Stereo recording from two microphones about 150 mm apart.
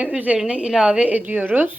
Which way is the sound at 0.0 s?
10° right (ahead or behind).